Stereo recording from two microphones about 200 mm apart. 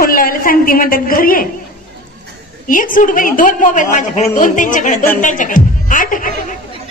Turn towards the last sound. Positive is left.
turn(degrees=40)  # may be behind; listen again after turning